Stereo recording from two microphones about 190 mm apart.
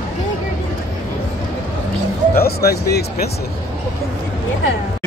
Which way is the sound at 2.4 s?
55° left (ahead or behind).